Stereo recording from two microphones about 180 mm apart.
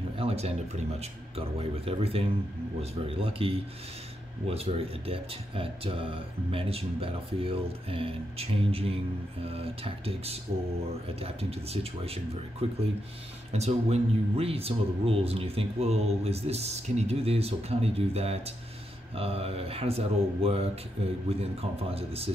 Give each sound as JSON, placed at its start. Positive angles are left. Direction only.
{"t": 0.2, "sound": "speech", "side_deg": -35}